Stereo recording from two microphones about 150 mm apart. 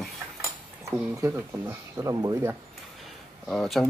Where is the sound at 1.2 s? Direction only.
15° right (ahead or behind).